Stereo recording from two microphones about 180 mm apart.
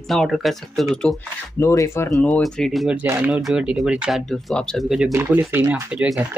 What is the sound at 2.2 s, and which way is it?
Speech, 5° left (ahead or behind).